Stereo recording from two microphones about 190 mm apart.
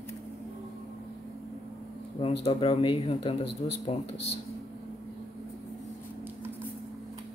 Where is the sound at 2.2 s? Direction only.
30° left (ahead or behind).